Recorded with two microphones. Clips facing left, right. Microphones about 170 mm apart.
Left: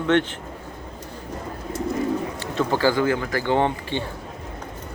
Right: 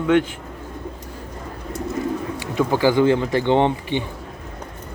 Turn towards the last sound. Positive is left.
turn(degrees=-20)  # may be behind; listen again after turning